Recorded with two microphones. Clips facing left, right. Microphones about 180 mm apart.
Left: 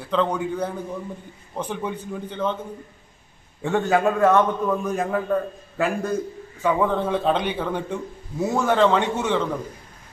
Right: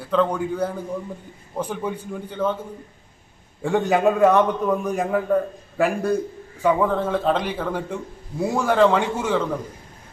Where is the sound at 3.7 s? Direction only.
15° right (ahead or behind).